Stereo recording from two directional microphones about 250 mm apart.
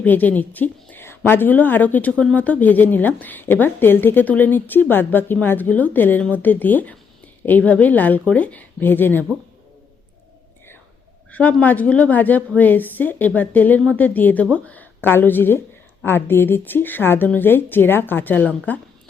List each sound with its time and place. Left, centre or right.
0.0 s a woman's voice: centre
11.3 s a woman's voice: centre